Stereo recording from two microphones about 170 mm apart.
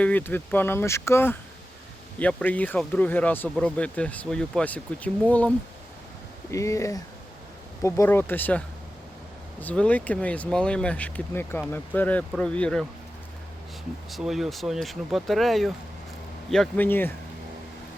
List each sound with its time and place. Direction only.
0.0 s speech: 10° left (ahead or behind)
14.1 s speech: centre (ahead or behind)